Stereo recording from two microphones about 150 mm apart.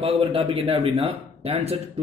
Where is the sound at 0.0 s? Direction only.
40° right (ahead or behind).